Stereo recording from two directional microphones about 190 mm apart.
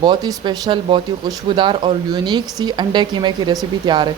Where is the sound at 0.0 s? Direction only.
20° right (ahead or behind).